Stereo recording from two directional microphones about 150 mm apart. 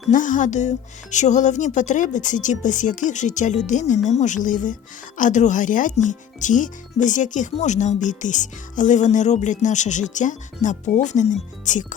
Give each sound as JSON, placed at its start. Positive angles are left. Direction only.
{"t": 0.1, "sound": "speech", "side_deg": 60}